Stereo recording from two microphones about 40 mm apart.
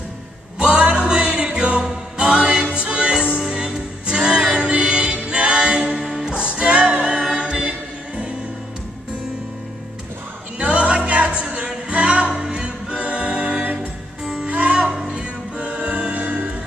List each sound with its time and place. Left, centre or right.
0.6 s music: right
10.6 s music: right
12.3 s a capella: centre
13.7 s music: centre
14.5 s music: right